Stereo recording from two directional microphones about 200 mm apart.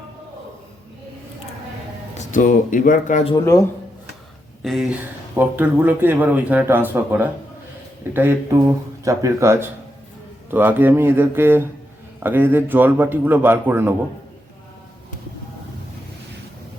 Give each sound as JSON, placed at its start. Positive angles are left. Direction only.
{"t": 2.1, "sound": "speech", "side_deg": 40}
{"t": 3.3, "sound": "speech", "side_deg": 15}
{"t": 4.6, "sound": "speech", "side_deg": 0}